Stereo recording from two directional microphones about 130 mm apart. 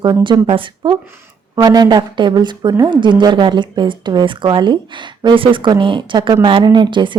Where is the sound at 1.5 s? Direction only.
30° right (ahead or behind).